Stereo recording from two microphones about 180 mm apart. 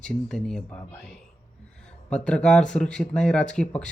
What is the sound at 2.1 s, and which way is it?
Speech, 5° left (ahead or behind).